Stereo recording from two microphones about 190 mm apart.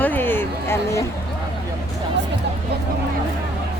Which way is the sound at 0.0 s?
10° left (ahead or behind).